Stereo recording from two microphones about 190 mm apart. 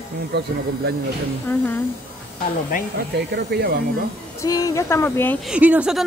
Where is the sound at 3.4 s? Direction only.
60° right (ahead or behind).